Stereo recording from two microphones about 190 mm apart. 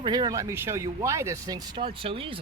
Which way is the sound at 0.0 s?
20° right (ahead or behind).